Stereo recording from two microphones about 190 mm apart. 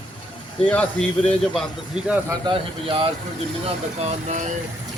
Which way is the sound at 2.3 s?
25° right (ahead or behind).